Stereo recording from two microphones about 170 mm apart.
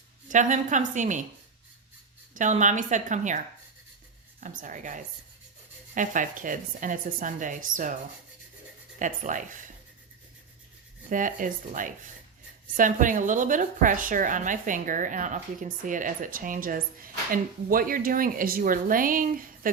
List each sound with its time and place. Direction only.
0.3 s a woman's voice: 45° right (ahead or behind)
2.3 s a woman's voice: 45° right (ahead or behind)
9.0 s a woman's voice: 50° right (ahead or behind)
11.1 s a woman's voice: 50° right (ahead or behind)